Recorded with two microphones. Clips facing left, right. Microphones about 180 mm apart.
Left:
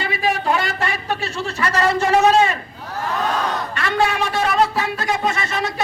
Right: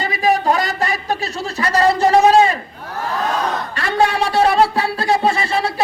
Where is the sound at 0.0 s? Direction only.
40° right (ahead or behind).